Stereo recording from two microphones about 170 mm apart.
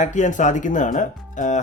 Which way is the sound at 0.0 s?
45° left (ahead or behind).